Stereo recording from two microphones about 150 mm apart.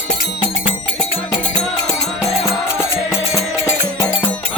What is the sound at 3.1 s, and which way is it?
Music, 15° left (ahead or behind).